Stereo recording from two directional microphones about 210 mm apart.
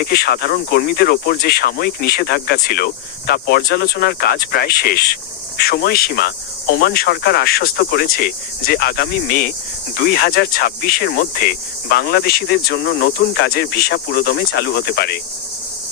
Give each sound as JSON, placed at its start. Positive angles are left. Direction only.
{"t": 0.0, "sound": "cricket", "side_deg": 45}